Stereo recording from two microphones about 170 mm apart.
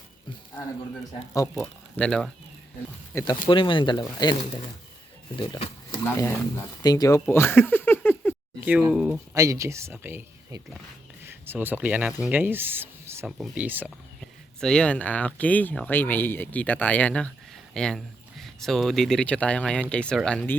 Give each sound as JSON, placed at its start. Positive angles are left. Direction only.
{"t": 1.3, "sound": "speech", "side_deg": 20}
{"t": 2.0, "sound": "speech", "side_deg": 5}
{"t": 3.2, "sound": "speech", "side_deg": 30}
{"t": 5.4, "sound": "speech", "side_deg": 25}
{"t": 8.8, "sound": "speech", "side_deg": -5}
{"t": 9.3, "sound": "speech", "side_deg": -20}
{"t": 14.6, "sound": "speech", "side_deg": 5}